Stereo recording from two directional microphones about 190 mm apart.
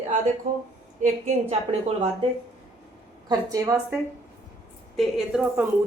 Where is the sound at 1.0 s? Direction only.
35° right (ahead or behind).